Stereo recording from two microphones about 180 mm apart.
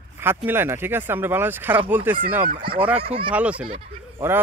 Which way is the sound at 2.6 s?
30° right (ahead or behind).